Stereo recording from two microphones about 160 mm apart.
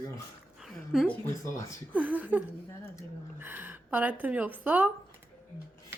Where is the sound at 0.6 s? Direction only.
Centre (ahead or behind).